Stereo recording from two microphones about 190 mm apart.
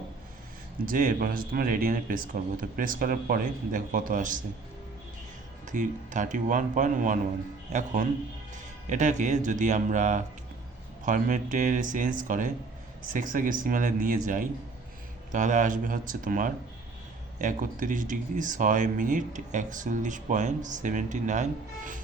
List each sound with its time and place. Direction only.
0.9 s speech: 45° right (ahead or behind)
5.6 s speech: 40° right (ahead or behind)